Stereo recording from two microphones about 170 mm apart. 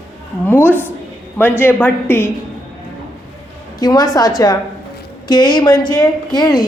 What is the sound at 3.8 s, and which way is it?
A woman's voice, 25° left (ahead or behind).